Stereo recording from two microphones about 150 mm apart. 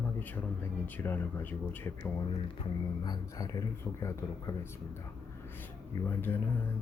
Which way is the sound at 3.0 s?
25° left (ahead or behind).